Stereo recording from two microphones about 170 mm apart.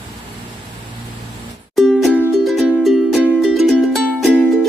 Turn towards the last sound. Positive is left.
turn(degrees=0)  # may be behind; listen again after turning